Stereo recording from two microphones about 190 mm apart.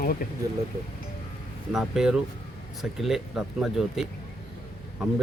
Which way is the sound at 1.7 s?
Centre (ahead or behind).